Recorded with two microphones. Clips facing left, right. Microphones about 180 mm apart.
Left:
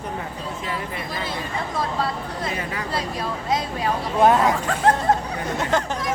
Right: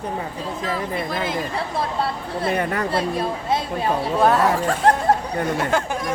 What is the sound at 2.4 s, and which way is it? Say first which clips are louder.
Speech: right 9 dB; 60° right (ahead or behind).